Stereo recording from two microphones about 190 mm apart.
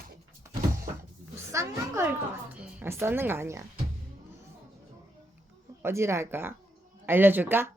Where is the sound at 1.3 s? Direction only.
15° right (ahead or behind).